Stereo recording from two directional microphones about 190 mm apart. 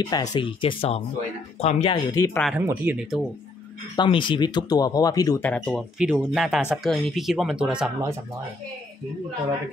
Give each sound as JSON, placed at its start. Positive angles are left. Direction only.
{"t": 0.0, "sound": "speech", "side_deg": 20}
{"t": 2.1, "sound": "speech", "side_deg": 20}
{"t": 2.6, "sound": "speech", "side_deg": -10}
{"t": 3.9, "sound": "speech", "side_deg": 25}
{"t": 5.5, "sound": "speech", "side_deg": 0}